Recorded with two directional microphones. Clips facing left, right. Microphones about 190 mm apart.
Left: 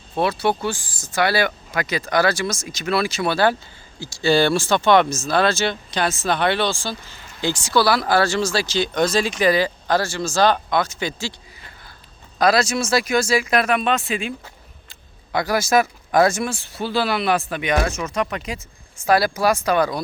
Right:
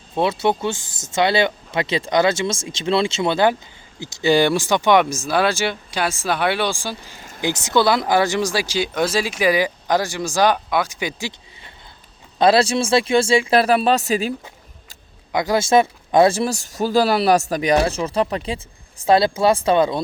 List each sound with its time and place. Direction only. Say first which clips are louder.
0.2 s speech: right 1 dB; 20° right (ahead or behind)
12.4 s speech: right 3 dB; 30° right (ahead or behind)
15.3 s speech: right 2 dB; 20° right (ahead or behind)